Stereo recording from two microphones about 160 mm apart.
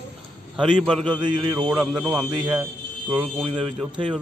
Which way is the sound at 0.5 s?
5° right (ahead or behind).